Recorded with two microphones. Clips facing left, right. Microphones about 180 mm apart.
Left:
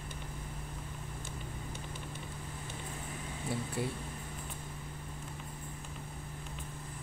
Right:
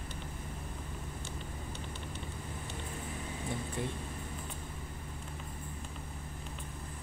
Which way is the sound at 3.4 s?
5° left (ahead or behind).